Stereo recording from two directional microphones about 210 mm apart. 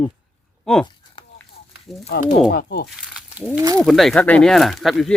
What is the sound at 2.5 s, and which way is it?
Speech, 45° left (ahead or behind).